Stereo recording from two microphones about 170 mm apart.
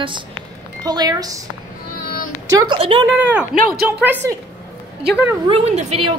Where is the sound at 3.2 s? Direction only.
10° right (ahead or behind).